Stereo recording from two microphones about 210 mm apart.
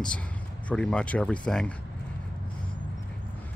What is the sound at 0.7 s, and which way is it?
Speech, 5° left (ahead or behind).